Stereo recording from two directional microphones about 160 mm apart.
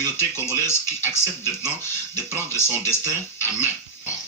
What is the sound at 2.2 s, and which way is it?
Speech, 15° left (ahead or behind).